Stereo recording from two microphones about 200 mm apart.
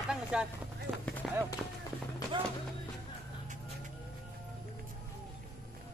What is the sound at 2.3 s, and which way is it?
Music, 25° right (ahead or behind).